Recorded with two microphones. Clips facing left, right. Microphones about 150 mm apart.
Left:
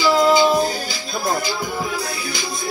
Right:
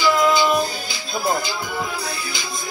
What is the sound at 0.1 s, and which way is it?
Music, 30° left (ahead or behind).